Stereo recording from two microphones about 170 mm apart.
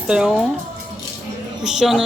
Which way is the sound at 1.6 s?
Centre (ahead or behind).